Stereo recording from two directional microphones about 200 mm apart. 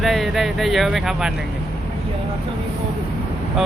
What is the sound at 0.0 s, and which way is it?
Speech, centre (ahead or behind).